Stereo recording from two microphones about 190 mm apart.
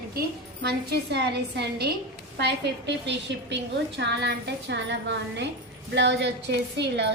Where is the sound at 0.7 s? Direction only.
60° right (ahead or behind).